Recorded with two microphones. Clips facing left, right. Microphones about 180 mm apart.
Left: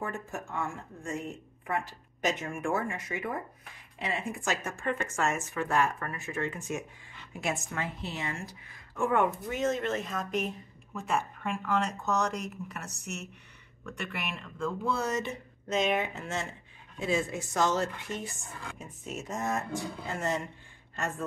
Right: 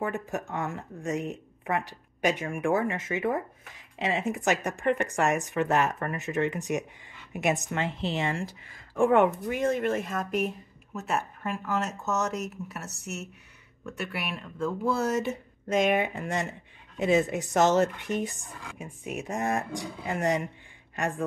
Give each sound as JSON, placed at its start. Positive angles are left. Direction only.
{"t": 0.0, "sound": "a woman's voice", "side_deg": -15}
{"t": 7.8, "sound": "speech", "side_deg": -90}
{"t": 9.5, "sound": "a woman's voice", "side_deg": -10}
{"t": 18.6, "sound": "speech", "side_deg": -5}